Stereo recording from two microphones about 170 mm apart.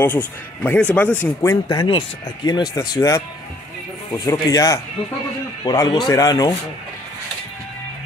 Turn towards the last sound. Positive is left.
turn(degrees=20)  # may be behind; listen again after turning